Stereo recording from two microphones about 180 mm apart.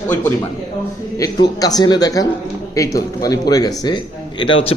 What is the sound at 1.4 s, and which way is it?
A man's voice, 20° left (ahead or behind).